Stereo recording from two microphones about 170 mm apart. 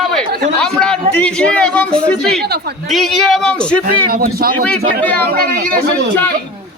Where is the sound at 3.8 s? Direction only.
60° right (ahead or behind).